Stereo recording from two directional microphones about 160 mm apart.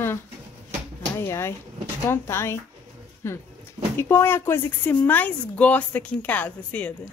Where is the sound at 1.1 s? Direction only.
15° left (ahead or behind).